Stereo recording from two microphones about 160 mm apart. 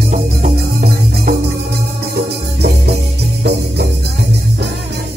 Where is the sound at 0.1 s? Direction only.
55° right (ahead or behind).